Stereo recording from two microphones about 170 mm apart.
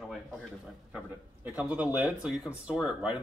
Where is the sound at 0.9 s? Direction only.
10° right (ahead or behind).